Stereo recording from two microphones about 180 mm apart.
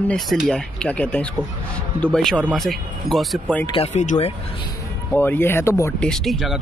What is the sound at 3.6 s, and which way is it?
Speech, 30° left (ahead or behind).